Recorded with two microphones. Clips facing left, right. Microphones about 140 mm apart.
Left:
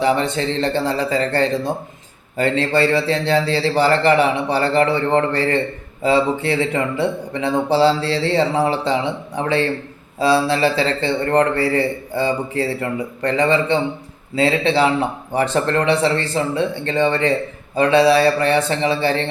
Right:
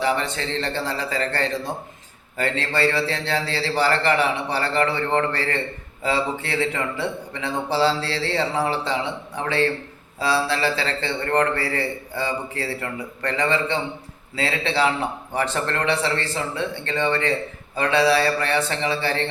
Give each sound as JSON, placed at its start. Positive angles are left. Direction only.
{"t": 0.0, "sound": "speech", "side_deg": 20}